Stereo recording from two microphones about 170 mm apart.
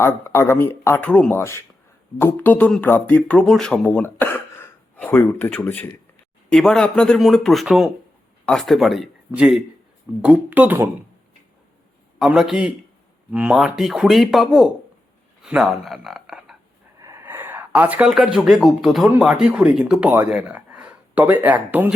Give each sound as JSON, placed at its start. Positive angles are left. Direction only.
{"t": 0.0, "sound": "speech", "side_deg": 15}
{"t": 12.2, "sound": "speech", "side_deg": -5}
{"t": 17.0, "sound": "speech", "side_deg": -15}